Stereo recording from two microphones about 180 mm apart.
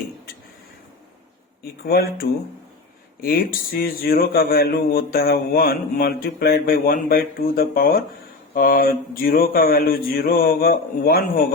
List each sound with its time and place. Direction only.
1.6 s speech: 60° left (ahead or behind)